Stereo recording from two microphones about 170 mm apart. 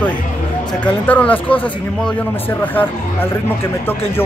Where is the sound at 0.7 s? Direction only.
10° left (ahead or behind).